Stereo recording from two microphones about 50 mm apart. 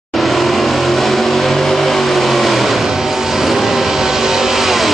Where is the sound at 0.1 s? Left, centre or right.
Centre.